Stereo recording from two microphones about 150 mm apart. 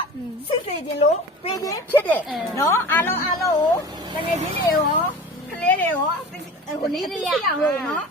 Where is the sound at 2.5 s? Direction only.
20° left (ahead or behind).